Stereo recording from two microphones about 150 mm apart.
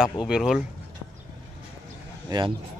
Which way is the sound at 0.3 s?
Centre (ahead or behind).